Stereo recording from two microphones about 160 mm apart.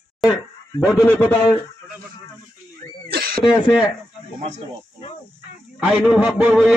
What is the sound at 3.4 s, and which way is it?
Speech, 5° right (ahead or behind).